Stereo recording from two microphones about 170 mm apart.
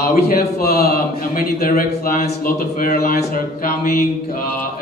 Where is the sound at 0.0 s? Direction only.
60° left (ahead or behind).